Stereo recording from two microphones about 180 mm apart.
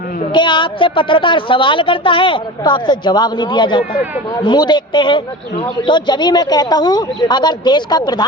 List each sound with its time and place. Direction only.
0.2 s speech: 25° left (ahead or behind)